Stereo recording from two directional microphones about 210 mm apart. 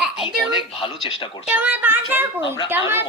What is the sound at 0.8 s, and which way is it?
Speech, 25° left (ahead or behind).